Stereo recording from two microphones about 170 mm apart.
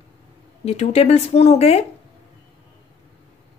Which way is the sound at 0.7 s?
40° left (ahead or behind).